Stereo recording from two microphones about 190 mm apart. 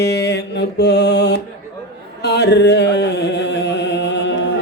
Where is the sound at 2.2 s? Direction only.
60° left (ahead or behind).